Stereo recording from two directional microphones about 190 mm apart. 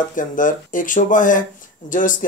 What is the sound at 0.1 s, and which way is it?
Speech, 45° left (ahead or behind).